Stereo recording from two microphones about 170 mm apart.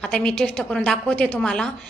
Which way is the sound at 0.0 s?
5° left (ahead or behind).